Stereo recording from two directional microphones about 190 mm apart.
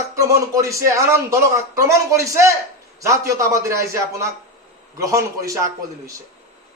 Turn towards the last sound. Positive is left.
turn(degrees=-15)  # may be behind; listen again after turning